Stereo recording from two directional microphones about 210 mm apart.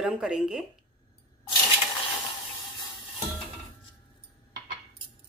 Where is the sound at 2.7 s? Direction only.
20° left (ahead or behind).